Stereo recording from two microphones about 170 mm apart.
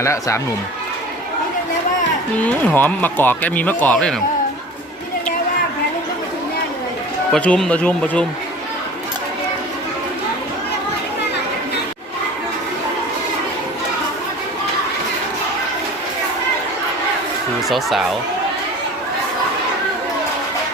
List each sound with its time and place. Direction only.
0.0 s speech: 15° left (ahead or behind)
2.4 s speech: 10° left (ahead or behind)
7.3 s speech: 5° left (ahead or behind)
17.7 s speech: centre (ahead or behind)